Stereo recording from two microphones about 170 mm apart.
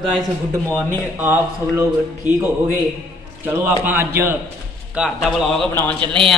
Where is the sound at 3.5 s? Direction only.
15° right (ahead or behind).